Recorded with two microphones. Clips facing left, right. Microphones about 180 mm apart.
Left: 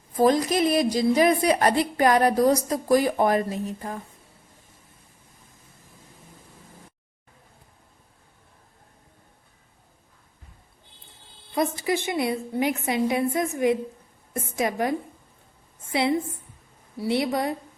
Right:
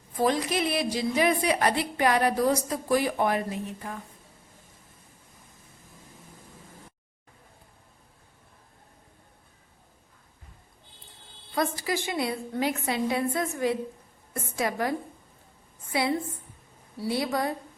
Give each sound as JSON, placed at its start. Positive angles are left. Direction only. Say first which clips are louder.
{"t": 0.2, "sound": "a woman's voice", "louder": "left 5 dB", "side_deg": 40}
{"t": 11.5, "sound": "a woman's voice", "louder": "left 4 dB", "side_deg": 20}